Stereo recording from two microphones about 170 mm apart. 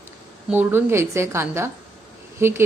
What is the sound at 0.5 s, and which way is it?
A woman's voice, 10° right (ahead or behind).